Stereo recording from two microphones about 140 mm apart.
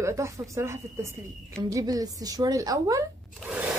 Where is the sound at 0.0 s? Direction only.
20° right (ahead or behind).